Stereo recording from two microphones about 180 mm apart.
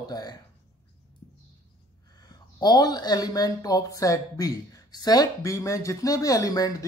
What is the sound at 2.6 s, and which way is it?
Speech, 20° left (ahead or behind).